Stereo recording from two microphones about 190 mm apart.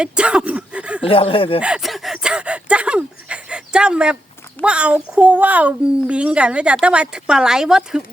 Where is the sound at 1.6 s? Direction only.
5° right (ahead or behind).